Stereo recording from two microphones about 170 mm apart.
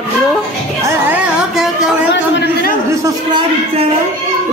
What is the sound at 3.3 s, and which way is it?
Speech, 30° right (ahead or behind).